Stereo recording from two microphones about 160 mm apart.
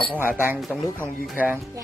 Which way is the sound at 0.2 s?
15° right (ahead or behind).